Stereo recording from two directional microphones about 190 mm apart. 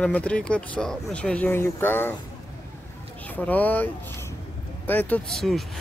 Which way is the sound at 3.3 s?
10° left (ahead or behind).